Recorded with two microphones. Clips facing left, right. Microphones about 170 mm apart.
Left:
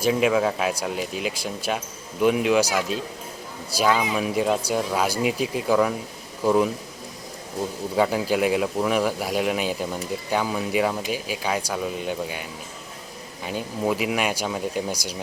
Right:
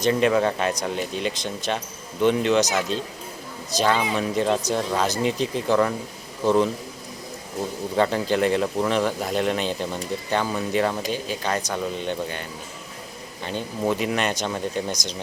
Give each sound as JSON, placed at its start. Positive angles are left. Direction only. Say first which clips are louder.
{"t": 0.0, "sound": "a man's voice", "louder": "right 1 dB", "side_deg": 5}
{"t": 7.9, "sound": "speech", "louder": "even", "side_deg": 5}